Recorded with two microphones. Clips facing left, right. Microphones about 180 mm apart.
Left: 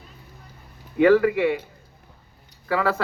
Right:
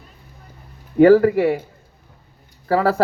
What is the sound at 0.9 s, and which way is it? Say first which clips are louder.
Speech: right 5 dB; 35° right (ahead or behind).